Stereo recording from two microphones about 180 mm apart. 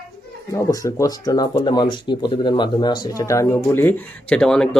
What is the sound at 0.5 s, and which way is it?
Speech, 20° left (ahead or behind).